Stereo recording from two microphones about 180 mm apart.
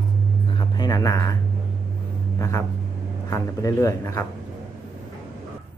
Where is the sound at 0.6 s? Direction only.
20° left (ahead or behind).